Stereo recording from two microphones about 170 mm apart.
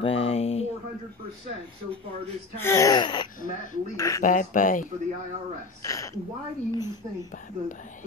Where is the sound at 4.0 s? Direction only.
20° left (ahead or behind).